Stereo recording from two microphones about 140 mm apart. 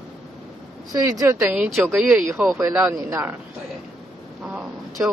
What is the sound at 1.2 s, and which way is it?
Speech, 20° right (ahead or behind).